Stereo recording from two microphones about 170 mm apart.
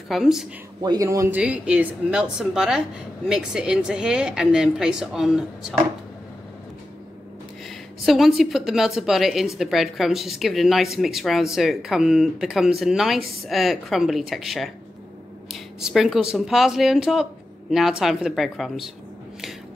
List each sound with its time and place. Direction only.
0.1 s a woman's voice: centre (ahead or behind)
0.8 s a woman's voice: 20° right (ahead or behind); by 5.8 s centre (ahead or behind)
8.0 s a woman's voice: centre (ahead or behind)